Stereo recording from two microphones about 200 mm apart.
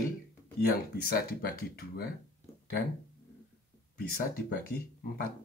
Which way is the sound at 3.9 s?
50° left (ahead or behind).